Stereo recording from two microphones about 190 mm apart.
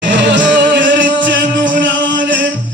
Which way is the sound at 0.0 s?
70° right (ahead or behind).